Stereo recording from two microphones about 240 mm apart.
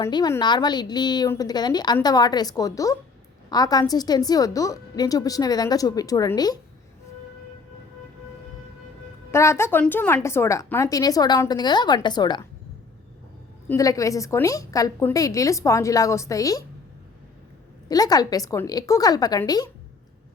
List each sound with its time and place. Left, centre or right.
0.0 s a woman's voice: centre
9.3 s a woman's voice: centre
13.7 s a woman's voice: centre
17.8 s a woman's voice: centre